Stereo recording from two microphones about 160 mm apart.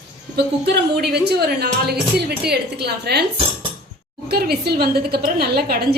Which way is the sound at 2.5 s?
90° right.